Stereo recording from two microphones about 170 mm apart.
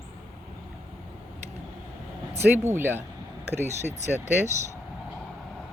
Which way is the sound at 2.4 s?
10° right (ahead or behind).